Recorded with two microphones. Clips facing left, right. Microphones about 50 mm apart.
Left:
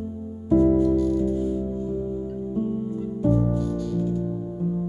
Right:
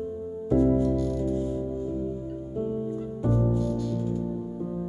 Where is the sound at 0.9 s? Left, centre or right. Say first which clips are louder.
Left 5 dB; left.